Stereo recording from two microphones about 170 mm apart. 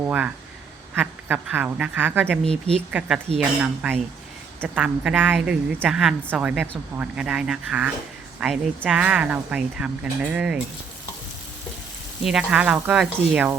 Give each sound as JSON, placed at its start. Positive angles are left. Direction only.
{"t": 0.0, "sound": "speech", "side_deg": -10}
{"t": 2.5, "sound": "speech", "side_deg": -35}
{"t": 3.6, "sound": "speech", "side_deg": -10}
{"t": 12.2, "sound": "speech", "side_deg": -5}